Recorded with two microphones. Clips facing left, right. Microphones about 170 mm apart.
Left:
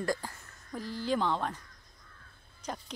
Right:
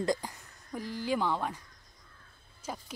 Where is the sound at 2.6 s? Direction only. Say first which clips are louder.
Left 1 dB; 5° right (ahead or behind).